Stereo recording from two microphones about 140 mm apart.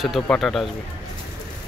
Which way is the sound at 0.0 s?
Centre (ahead or behind).